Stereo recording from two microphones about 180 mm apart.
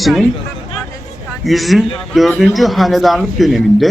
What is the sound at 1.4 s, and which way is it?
A man's voice, centre (ahead or behind).